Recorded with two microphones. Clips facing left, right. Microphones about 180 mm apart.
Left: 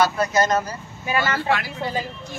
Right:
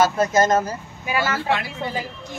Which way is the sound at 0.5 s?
25° right (ahead or behind).